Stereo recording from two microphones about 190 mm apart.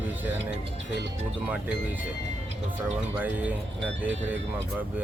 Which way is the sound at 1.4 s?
10° right (ahead or behind).